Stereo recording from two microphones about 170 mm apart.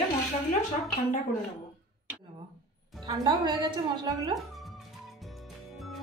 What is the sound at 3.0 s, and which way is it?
A woman's voice, 25° right (ahead or behind).